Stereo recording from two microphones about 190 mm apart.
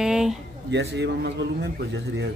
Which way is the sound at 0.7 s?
65° right (ahead or behind).